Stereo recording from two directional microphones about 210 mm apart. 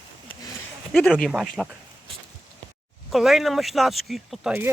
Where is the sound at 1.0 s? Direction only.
5° left (ahead or behind).